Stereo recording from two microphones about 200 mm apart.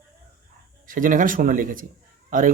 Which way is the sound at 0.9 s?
40° right (ahead or behind).